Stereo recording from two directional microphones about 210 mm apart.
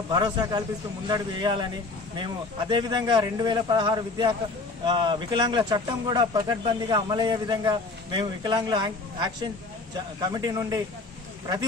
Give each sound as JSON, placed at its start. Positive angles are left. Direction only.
{"t": 0.1, "sound": "speech", "side_deg": -20}